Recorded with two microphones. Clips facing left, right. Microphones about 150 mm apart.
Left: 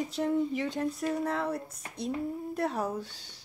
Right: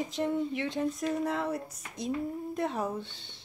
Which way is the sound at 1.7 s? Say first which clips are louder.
Left 1 dB; 30° left (ahead or behind).